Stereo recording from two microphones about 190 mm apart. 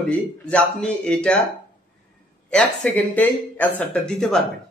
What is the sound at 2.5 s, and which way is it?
Speech, 5° left (ahead or behind).